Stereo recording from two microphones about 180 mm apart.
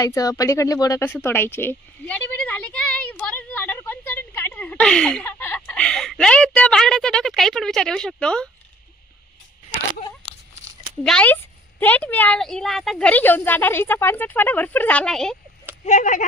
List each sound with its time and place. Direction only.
0.0 s speech: 20° left (ahead or behind)
11.0 s a woman's voice: 5° left (ahead or behind)
15.9 s speech: 45° left (ahead or behind)